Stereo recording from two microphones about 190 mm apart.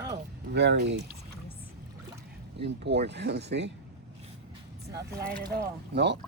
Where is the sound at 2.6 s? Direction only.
65° right (ahead or behind).